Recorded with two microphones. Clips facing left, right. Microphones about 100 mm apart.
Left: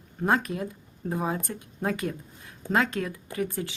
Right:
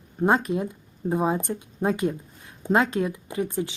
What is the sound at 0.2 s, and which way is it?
Speech, 20° right (ahead or behind).